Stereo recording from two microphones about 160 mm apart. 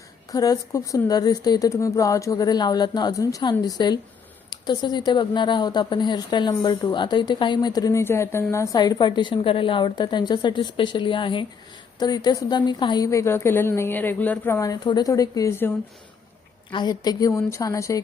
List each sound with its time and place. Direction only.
0.3 s a woman's voice: 25° left (ahead or behind)
16.7 s a woman's voice: 25° left (ahead or behind)